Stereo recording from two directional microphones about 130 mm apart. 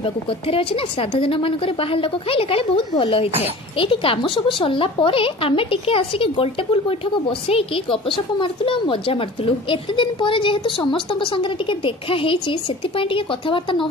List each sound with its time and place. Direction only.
0.0 s a woman's voice: 45° left (ahead or behind)